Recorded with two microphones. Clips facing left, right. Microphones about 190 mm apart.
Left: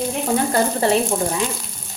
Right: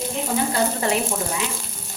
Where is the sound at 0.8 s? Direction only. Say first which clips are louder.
Left 7 dB; 35° left (ahead or behind).